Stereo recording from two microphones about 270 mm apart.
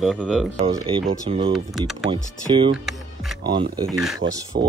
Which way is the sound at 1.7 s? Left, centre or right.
Centre.